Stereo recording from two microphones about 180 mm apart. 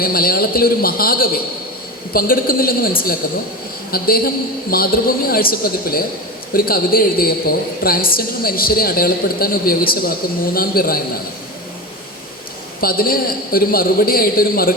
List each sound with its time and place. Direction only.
0.0 s a woman's voice: 55° left (ahead or behind)
3.9 s a woman's voice: 55° left (ahead or behind)
12.8 s a woman's voice: 55° left (ahead or behind)